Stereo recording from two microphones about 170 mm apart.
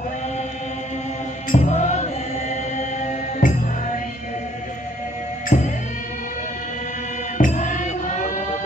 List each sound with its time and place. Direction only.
1.5 s music: 45° left (ahead or behind)
5.5 s music: 50° left (ahead or behind)
7.3 s music: 50° left (ahead or behind)